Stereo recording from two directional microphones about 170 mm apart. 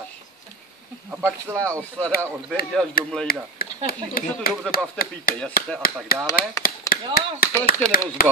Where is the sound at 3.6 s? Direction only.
60° left (ahead or behind).